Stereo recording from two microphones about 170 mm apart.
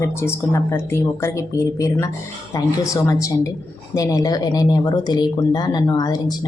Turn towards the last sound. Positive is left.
turn(degrees=25)  # may be behind; listen again after turning